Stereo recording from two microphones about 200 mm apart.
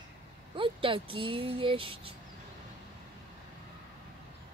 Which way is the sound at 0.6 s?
25° right (ahead or behind).